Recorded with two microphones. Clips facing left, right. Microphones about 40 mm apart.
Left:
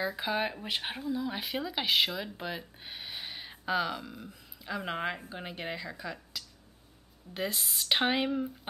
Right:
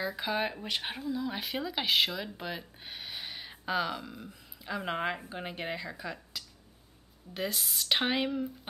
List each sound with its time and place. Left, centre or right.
0.0 s speech: centre